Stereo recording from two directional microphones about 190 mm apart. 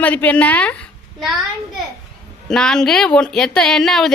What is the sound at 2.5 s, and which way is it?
Speech, 5° left (ahead or behind).